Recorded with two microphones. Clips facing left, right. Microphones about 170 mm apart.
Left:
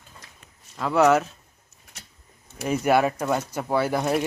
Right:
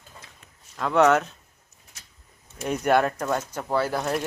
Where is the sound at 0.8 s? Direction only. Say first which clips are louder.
Even; 5° left (ahead or behind).